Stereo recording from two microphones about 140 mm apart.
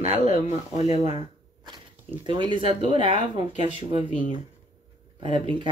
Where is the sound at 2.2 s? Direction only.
35° right (ahead or behind).